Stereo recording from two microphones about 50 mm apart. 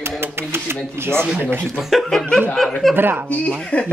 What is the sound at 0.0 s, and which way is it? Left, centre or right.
Speech, right.